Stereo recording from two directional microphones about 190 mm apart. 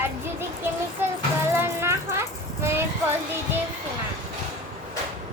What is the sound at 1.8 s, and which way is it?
Children playing, 15° right (ahead or behind).